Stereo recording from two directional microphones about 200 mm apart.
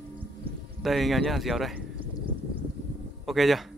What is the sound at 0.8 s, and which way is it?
Speech, centre (ahead or behind).